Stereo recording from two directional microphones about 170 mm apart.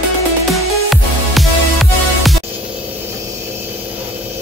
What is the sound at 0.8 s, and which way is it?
Music, centre (ahead or behind).